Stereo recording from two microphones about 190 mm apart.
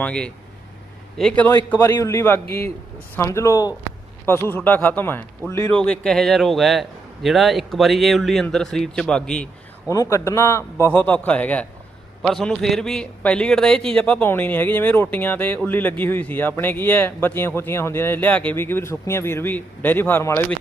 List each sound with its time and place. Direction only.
0.0 s a man's voice: 5° left (ahead or behind)
9.9 s a man's voice: 15° left (ahead or behind)